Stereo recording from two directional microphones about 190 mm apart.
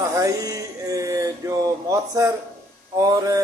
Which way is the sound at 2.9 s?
20° right (ahead or behind).